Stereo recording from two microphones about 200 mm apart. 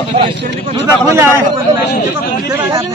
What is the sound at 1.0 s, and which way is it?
Speech, 15° right (ahead or behind).